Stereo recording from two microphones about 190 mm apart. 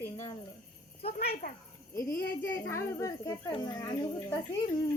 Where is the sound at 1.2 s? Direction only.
55° left (ahead or behind).